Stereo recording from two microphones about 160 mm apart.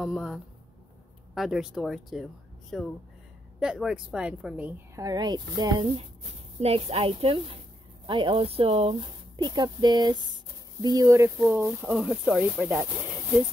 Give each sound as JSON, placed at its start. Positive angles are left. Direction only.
{"t": 0.0, "sound": "a woman's voice", "side_deg": -5}
{"t": 5.0, "sound": "speech", "side_deg": -25}
{"t": 6.6, "sound": "a woman's voice", "side_deg": -40}